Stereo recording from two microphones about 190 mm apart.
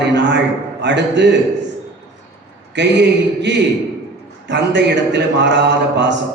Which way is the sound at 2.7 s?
65° right (ahead or behind).